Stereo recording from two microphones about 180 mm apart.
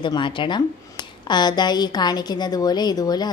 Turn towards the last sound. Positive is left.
turn(degrees=20)  # may be behind; listen again after turning